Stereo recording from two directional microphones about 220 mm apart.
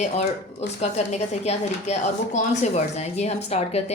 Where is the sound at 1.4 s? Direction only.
30° left (ahead or behind).